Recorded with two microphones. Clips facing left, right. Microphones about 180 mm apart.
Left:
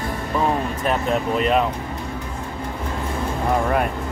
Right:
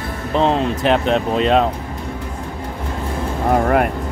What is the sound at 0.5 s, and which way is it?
Speech, 85° right.